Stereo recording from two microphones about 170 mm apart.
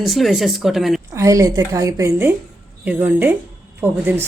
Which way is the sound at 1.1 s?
20° right (ahead or behind).